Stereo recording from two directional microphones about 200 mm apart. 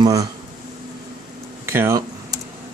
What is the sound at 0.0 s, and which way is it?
Speech, 15° right (ahead or behind).